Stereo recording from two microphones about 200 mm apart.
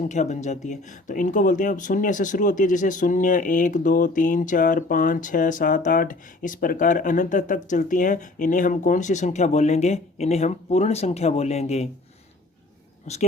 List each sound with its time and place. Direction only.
0.1 s speech: 35° left (ahead or behind)
13.1 s speech: 30° left (ahead or behind)